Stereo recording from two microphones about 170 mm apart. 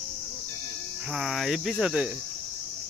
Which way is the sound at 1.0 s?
Centre (ahead or behind).